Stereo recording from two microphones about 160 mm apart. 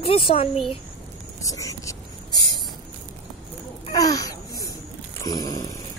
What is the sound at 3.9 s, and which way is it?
Babbling, 20° left (ahead or behind).